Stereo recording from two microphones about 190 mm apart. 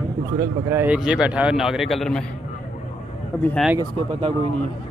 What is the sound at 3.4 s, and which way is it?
Speech, 5° left (ahead or behind).